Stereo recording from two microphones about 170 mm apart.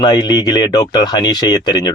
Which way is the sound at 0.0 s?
25° left (ahead or behind).